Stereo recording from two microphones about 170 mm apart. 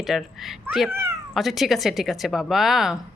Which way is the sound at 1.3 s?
Centre (ahead or behind).